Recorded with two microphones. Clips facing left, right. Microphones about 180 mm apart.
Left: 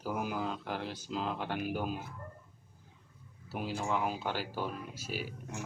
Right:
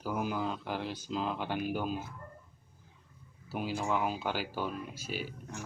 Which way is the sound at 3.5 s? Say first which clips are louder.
Right 2 dB; centre (ahead or behind).